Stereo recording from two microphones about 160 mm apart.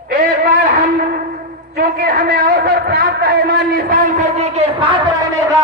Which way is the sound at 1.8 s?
60° right (ahead or behind).